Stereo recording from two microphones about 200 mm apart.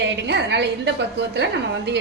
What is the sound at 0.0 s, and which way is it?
A woman's voice, 60° right (ahead or behind).